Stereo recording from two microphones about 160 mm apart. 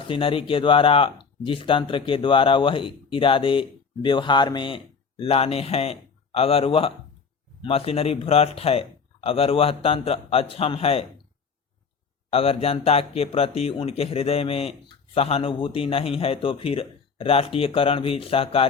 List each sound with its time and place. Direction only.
0.0 s speech: 35° left (ahead or behind)
12.3 s speech: 40° left (ahead or behind)